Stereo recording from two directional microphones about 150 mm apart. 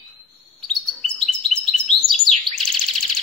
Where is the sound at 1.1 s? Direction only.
5° left (ahead or behind).